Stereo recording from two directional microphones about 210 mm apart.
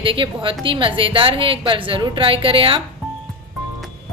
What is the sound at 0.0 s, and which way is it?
A woman's voice, 25° right (ahead or behind).